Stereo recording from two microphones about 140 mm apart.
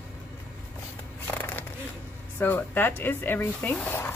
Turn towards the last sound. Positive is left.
turn(degrees=10)  # may be behind; listen again after turning